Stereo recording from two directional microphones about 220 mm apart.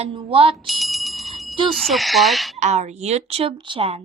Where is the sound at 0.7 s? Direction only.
Centre (ahead or behind).